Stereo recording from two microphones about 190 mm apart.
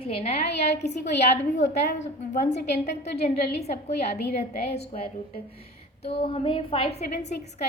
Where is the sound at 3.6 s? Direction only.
35° left (ahead or behind).